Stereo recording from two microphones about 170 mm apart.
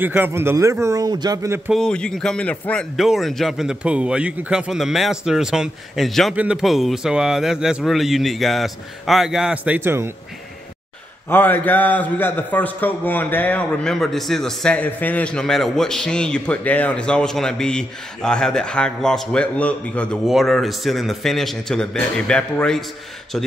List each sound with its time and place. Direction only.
0.0 s speech: 10° right (ahead or behind)
1.7 s a man's voice: 5° left (ahead or behind); by 10.1 s 15° right (ahead or behind)
11.2 s a man's voice: 10° left (ahead or behind)